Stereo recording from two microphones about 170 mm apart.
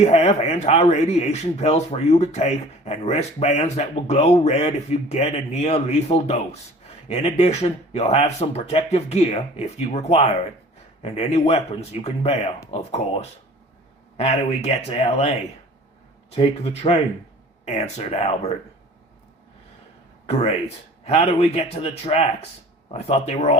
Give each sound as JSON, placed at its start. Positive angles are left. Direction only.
{"t": 0.0, "sound": "speech", "side_deg": 40}
{"t": 14.2, "sound": "speech", "side_deg": 40}
{"t": 16.3, "sound": "speech", "side_deg": 35}
{"t": 21.0, "sound": "speech", "side_deg": 40}